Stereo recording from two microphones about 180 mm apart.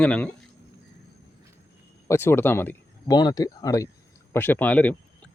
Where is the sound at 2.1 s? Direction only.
15° left (ahead or behind).